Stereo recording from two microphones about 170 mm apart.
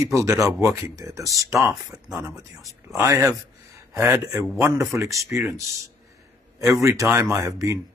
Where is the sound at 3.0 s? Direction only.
15° right (ahead or behind).